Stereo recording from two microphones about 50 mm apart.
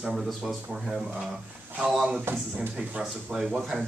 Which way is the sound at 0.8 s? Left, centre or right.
Centre.